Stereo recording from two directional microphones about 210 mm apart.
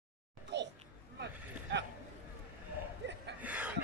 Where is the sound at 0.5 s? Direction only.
55° right (ahead or behind).